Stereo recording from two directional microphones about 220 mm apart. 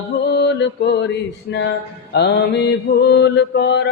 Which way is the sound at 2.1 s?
50° left (ahead or behind).